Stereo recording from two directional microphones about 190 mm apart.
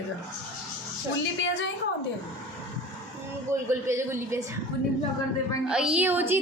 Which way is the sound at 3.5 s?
15° right (ahead or behind).